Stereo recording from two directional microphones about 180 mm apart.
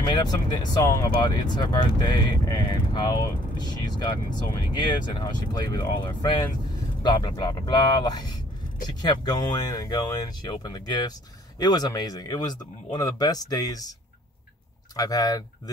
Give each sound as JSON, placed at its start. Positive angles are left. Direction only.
{"t": 0.1, "sound": "speech", "side_deg": 25}
{"t": 15.0, "sound": "speech", "side_deg": 20}